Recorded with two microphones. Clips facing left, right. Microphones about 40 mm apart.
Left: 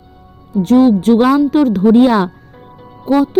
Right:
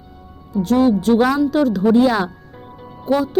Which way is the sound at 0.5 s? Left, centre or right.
Left.